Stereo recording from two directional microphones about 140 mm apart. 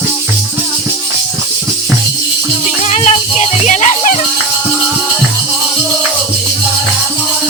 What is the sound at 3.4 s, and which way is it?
Music, 60° left (ahead or behind).